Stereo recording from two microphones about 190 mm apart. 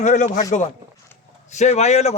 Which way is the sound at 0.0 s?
40° left (ahead or behind).